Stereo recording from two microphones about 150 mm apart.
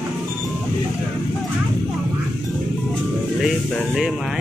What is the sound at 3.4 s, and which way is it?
Speech, centre (ahead or behind).